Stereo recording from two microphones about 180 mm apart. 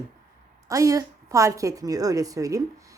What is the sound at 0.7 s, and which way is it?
A woman's voice, 20° right (ahead or behind).